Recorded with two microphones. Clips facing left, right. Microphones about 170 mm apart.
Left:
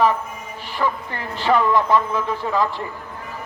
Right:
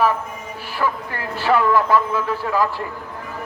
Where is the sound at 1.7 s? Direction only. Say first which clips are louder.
Right 1 dB; 20° left (ahead or behind).